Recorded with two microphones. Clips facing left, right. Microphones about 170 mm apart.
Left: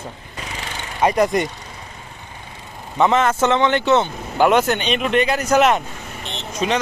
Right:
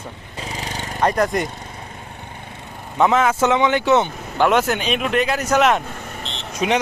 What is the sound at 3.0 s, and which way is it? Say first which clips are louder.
Speech: even; 5° right (ahead or behind).